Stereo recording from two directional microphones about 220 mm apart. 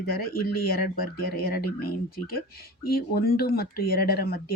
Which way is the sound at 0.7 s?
40° left (ahead or behind).